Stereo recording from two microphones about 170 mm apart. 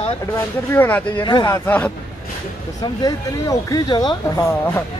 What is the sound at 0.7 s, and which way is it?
Speech, 10° left (ahead or behind).